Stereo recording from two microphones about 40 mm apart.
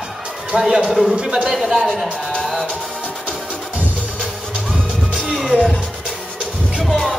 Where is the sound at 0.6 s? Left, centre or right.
Centre.